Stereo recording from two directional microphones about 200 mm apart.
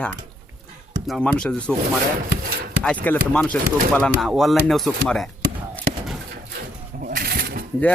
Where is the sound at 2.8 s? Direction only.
5° left (ahead or behind).